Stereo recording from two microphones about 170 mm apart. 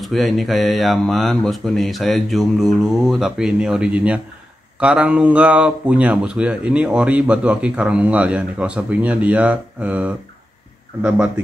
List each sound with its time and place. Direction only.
0.0 s speech: centre (ahead or behind)